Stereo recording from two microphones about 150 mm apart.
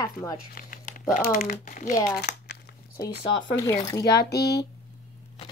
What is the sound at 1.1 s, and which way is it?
Speech, 65° left (ahead or behind).